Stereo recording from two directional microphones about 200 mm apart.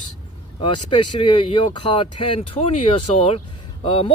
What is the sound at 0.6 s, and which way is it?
Speech, 25° left (ahead or behind).